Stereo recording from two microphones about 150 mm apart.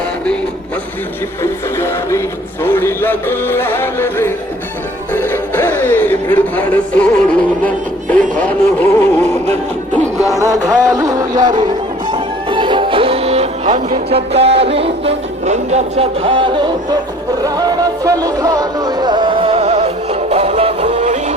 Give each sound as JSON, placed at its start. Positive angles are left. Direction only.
{"t": 1.4, "sound": "music", "side_deg": 20}
{"t": 10.2, "sound": "music", "side_deg": -20}